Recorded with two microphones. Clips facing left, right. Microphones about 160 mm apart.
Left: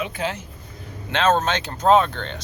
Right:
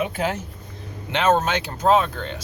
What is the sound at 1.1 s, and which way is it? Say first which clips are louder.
Speech: even; 15° right (ahead or behind).